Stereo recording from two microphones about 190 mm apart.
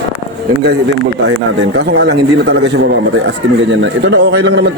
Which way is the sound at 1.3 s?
75° right (ahead or behind).